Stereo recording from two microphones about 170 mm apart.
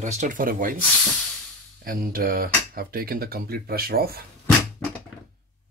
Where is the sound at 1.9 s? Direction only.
55° right (ahead or behind).